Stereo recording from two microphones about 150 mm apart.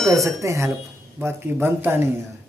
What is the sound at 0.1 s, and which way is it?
Speech, 20° right (ahead or behind).